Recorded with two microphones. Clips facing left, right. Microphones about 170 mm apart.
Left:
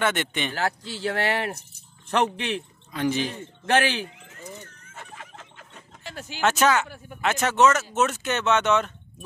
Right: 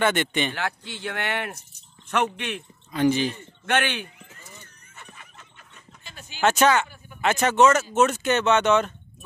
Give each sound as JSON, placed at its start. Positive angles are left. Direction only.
{"t": 0.0, "sound": "speech", "side_deg": 0}
{"t": 0.6, "sound": "speech", "side_deg": 35}
{"t": 2.9, "sound": "speech", "side_deg": 0}
{"t": 3.6, "sound": "speech", "side_deg": 35}
{"t": 4.9, "sound": "a sound", "side_deg": 90}
{"t": 6.4, "sound": "speech", "side_deg": 0}